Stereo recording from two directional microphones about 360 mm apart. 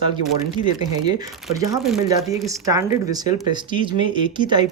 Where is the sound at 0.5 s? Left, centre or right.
Centre.